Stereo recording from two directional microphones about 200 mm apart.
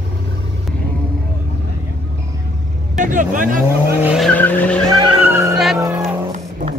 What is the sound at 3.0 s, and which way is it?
Speech, 40° right (ahead or behind).